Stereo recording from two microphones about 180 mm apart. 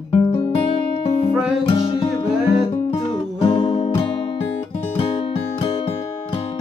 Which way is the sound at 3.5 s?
25° left (ahead or behind).